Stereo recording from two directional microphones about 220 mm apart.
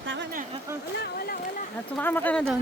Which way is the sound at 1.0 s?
45° left (ahead or behind).